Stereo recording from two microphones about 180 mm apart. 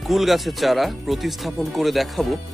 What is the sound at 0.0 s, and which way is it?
Speech, centre (ahead or behind).